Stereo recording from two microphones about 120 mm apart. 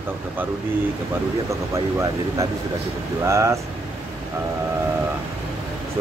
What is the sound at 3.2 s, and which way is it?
Speech, 25° right (ahead or behind).